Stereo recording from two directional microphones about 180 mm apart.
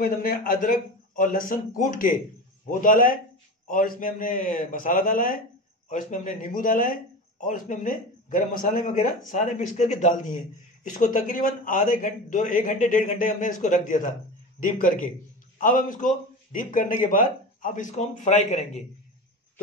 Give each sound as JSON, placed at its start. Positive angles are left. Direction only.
{"t": 0.0, "sound": "a man's voice", "side_deg": 50}